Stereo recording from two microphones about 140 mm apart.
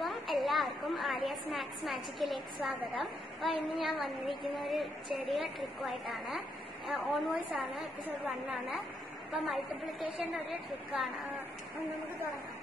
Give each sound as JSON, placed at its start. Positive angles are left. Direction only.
{"t": 0.0, "sound": "a woman's voice", "side_deg": 0}